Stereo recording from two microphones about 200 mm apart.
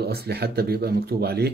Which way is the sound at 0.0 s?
50° right (ahead or behind).